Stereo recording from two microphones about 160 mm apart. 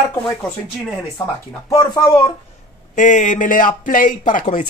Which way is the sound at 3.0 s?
55° left (ahead or behind).